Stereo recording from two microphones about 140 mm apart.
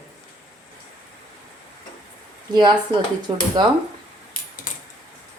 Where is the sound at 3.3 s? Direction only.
35° right (ahead or behind).